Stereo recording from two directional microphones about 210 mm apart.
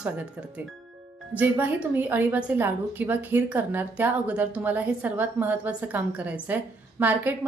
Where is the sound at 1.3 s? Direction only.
10° right (ahead or behind).